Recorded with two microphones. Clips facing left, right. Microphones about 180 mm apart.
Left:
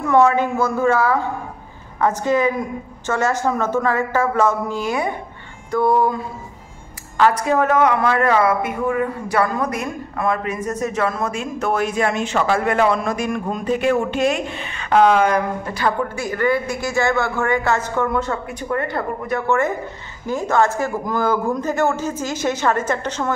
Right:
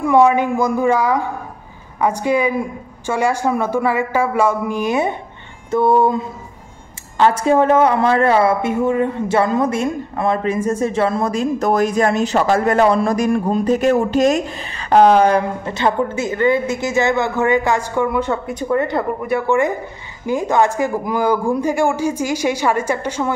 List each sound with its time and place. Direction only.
0.0 s a woman's voice: 15° right (ahead or behind)